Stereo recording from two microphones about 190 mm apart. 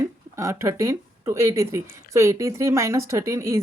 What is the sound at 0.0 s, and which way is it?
Speech, 15° right (ahead or behind).